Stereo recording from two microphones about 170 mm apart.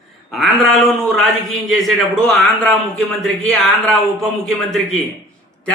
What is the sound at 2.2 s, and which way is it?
A man's voice, 5° left (ahead or behind).